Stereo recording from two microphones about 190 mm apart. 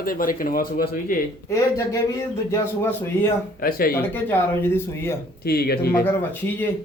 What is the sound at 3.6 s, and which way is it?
Speech, 50° left (ahead or behind).